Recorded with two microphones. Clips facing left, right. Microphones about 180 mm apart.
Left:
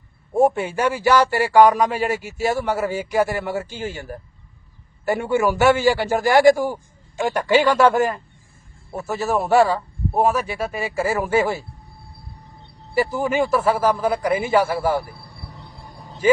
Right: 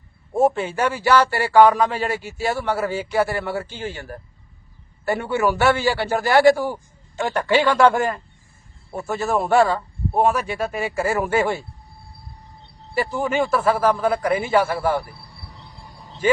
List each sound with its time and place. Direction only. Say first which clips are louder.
0.3 s a man's voice: left 1 dB; 10° left (ahead or behind)
12.9 s speech: left 2 dB; 10° left (ahead or behind)
15.0 s cricket: left 3 dB; 50° left (ahead or behind)